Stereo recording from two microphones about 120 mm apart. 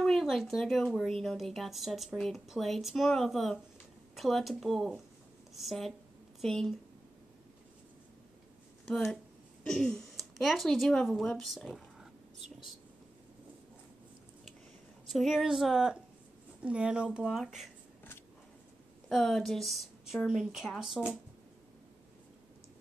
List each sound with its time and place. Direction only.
0.0 s a woman's voice: 5° left (ahead or behind)
9.1 s speech: 5° left (ahead or behind)
15.0 s a woman's voice: centre (ahead or behind)
19.0 s a woman's voice: 5° left (ahead or behind)